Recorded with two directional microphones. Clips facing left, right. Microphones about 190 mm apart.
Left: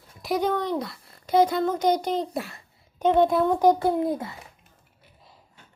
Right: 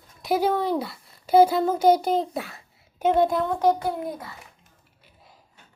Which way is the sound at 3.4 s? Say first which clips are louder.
Left 2 dB; 15° left (ahead or behind).